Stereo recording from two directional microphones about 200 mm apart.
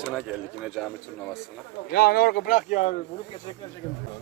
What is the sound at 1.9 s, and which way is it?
Speech, 50° left (ahead or behind).